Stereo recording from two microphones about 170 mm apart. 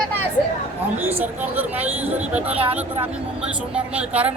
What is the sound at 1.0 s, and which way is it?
Speech, 10° right (ahead or behind).